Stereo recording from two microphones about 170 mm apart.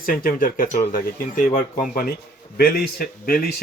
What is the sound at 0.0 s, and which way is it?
Speech, 55° left (ahead or behind).